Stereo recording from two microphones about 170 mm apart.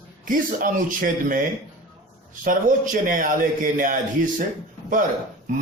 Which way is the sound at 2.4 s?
50° right (ahead or behind).